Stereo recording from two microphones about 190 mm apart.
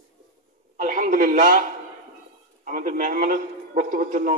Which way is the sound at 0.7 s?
45° right (ahead or behind).